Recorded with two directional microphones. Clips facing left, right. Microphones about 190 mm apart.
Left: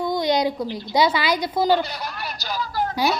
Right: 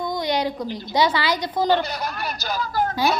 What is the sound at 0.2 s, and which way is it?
A woman's voice, 15° left (ahead or behind).